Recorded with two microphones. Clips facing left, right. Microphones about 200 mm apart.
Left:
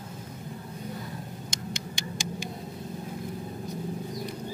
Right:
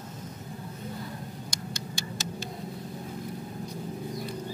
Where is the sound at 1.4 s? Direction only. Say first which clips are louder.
Left 1 dB; 15° left (ahead or behind).